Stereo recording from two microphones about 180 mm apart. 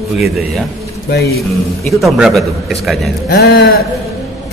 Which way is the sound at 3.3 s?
65° left (ahead or behind).